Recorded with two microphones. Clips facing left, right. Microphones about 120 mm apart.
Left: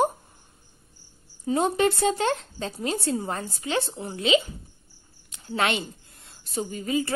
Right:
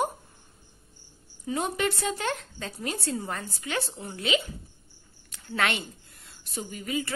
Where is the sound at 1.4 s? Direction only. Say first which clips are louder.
Left 6 dB; 30° left (ahead or behind).